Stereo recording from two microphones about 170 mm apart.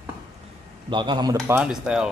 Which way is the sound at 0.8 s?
25° right (ahead or behind).